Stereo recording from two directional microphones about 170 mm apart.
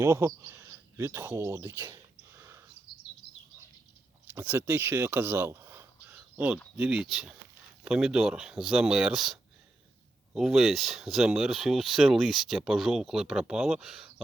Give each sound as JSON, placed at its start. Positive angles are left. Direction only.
{"t": 0.0, "sound": "speech", "side_deg": -15}
{"t": 4.3, "sound": "speech", "side_deg": -15}